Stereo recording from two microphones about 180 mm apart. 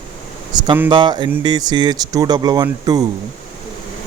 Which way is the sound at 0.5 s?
25° right (ahead or behind).